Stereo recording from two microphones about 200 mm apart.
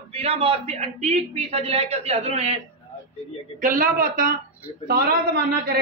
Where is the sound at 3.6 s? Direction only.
45° right (ahead or behind).